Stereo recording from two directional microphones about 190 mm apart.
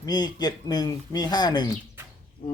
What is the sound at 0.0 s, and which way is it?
Speech, 20° left (ahead or behind).